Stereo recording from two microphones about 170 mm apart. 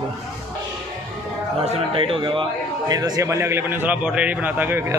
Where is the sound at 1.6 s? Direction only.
30° right (ahead or behind).